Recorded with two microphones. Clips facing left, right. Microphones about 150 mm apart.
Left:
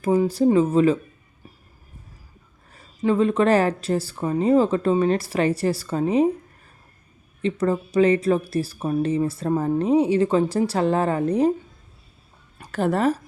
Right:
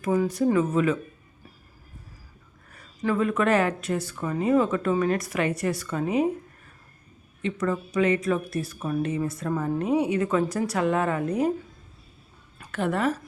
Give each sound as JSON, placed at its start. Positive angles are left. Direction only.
{"t": 0.0, "sound": "speech", "side_deg": 30}
{"t": 2.6, "sound": "speech", "side_deg": 25}
{"t": 7.4, "sound": "speech", "side_deg": 30}
{"t": 12.5, "sound": "a woman's voice", "side_deg": 35}